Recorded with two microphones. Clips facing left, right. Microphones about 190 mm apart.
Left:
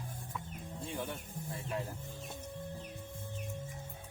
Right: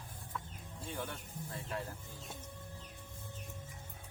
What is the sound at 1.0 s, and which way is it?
Speech, 15° left (ahead or behind).